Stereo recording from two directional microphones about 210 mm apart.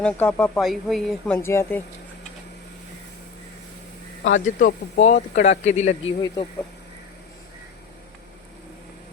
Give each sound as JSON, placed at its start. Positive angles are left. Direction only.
{"t": 0.0, "sound": "a woman's voice", "side_deg": 5}
{"t": 1.4, "sound": "speech", "side_deg": 10}
{"t": 4.2, "sound": "speech", "side_deg": 60}
{"t": 4.6, "sound": "speech", "side_deg": 35}
{"t": 6.2, "sound": "speech", "side_deg": 20}